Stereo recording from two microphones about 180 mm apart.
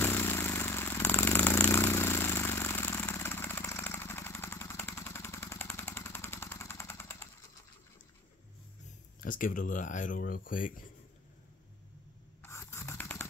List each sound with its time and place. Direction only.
0.0 s vehicle: 15° left (ahead or behind)
9.2 s speech: 50° left (ahead or behind)
12.4 s scratch: 15° left (ahead or behind)